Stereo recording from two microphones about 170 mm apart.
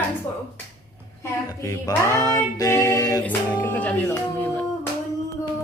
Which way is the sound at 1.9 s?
20° left (ahead or behind).